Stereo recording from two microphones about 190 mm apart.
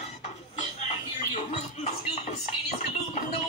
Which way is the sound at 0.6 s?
35° left (ahead or behind).